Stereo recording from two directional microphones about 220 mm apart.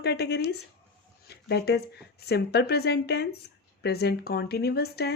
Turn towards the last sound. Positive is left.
turn(degrees=45)  # may be behind; listen again after turning